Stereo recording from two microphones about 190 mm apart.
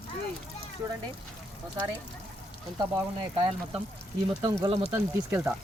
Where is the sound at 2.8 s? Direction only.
20° right (ahead or behind).